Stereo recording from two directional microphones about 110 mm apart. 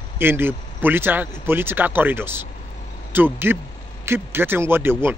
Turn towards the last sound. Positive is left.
turn(degrees=-20)  # may be behind; listen again after turning